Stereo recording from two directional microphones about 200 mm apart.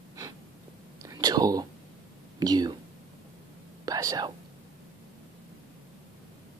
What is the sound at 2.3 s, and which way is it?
Speech, 20° right (ahead or behind).